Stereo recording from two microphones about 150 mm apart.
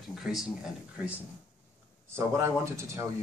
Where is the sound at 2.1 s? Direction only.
20° right (ahead or behind).